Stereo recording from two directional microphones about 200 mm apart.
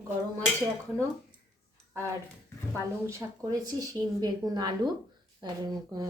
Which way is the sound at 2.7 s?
15° right (ahead or behind).